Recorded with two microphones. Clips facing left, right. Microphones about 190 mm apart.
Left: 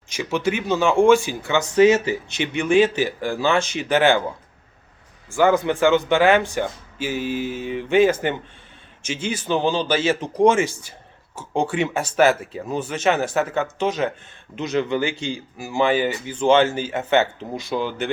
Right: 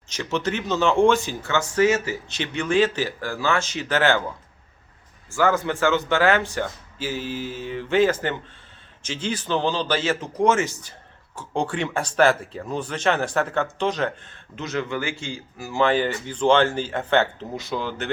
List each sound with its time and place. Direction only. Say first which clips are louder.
0.1 s speech: left 3 dB; 10° left (ahead or behind)
5.3 s speech: left 4 dB; 20° left (ahead or behind)
14.5 s speech: left 5 dB; 15° left (ahead or behind)